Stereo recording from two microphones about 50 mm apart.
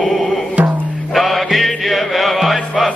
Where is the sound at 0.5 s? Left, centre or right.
Right.